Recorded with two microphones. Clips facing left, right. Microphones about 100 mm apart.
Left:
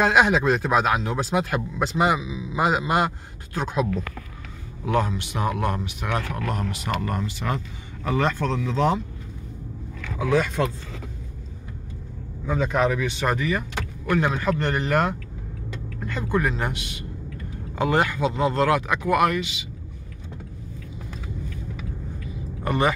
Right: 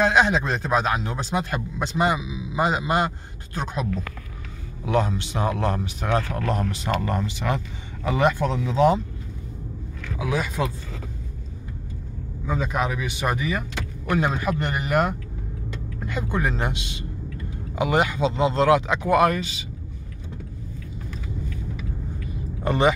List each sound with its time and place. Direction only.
0.0 s speech: 5° left (ahead or behind)
2.1 s a man's voice: 10° right (ahead or behind)
2.5 s a man's voice: 5° left (ahead or behind)
4.8 s a man's voice: 20° right (ahead or behind)
10.2 s speech: 5° right (ahead or behind)
12.4 s a man's voice: 5° right (ahead or behind); by 19.6 s 35° right (ahead or behind)
22.6 s speech: 20° right (ahead or behind)